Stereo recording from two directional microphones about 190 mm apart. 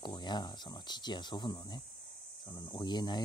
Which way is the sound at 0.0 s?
25° left (ahead or behind).